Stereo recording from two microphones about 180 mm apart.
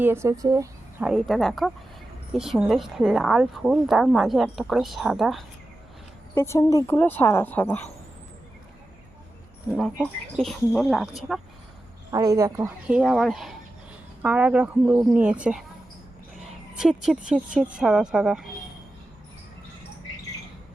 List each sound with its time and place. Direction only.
0.0 s speech: 15° right (ahead or behind)
1.0 s speech: centre (ahead or behind)
6.3 s speech: 15° left (ahead or behind)
9.7 s speech: centre (ahead or behind)
12.1 s speech: 20° right (ahead or behind)
12.9 s speech: centre (ahead or behind)
16.7 s speech: 5° right (ahead or behind)